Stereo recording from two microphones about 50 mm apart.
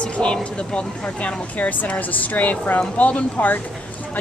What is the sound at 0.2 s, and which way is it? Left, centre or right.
Speech, left.